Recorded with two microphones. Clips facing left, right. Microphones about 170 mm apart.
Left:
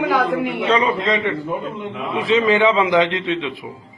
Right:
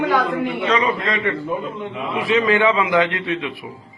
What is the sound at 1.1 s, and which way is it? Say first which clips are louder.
Speech: left 2 dB; 20° left (ahead or behind).